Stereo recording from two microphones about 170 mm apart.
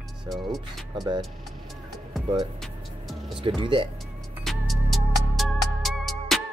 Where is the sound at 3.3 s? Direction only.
30° right (ahead or behind).